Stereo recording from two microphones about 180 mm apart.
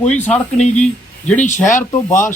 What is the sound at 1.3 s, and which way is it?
Speech, 40° left (ahead or behind).